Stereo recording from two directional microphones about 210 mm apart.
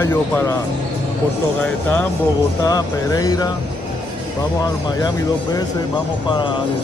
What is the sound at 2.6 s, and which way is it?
Speech, 15° left (ahead or behind).